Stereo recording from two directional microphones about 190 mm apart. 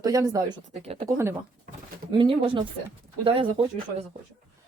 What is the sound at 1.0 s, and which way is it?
Speech, 15° right (ahead or behind).